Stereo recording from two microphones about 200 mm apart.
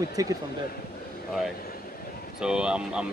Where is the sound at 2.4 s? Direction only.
5° right (ahead or behind).